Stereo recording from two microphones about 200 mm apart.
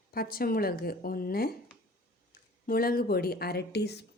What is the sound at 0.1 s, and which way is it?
Speech, 50° left (ahead or behind).